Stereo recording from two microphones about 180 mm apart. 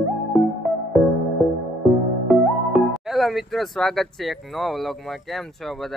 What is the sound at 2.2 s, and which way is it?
Speech, centre (ahead or behind).